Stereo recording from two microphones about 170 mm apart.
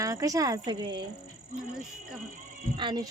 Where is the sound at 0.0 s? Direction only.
20° right (ahead or behind).